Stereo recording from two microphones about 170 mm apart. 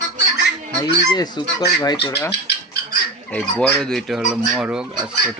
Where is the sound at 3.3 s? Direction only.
5° left (ahead or behind).